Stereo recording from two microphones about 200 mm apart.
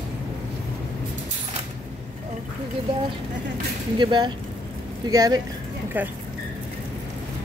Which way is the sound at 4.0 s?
25° right (ahead or behind).